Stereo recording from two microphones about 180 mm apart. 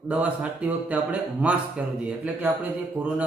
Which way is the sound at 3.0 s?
10° right (ahead or behind).